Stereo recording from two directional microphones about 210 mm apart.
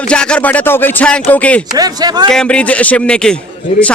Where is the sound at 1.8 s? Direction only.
20° right (ahead or behind).